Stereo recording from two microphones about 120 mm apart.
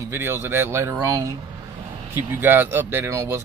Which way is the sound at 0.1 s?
20° right (ahead or behind).